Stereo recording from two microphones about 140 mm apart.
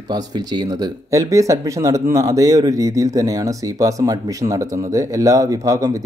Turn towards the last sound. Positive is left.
turn(degrees=-25)  # may be behind; listen again after turning